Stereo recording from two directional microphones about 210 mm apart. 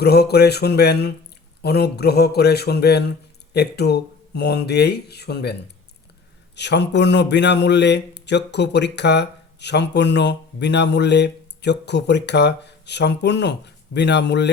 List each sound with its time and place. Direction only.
0.0 s speech: 50° left (ahead or behind)
6.6 s a man's voice: 55° left (ahead or behind)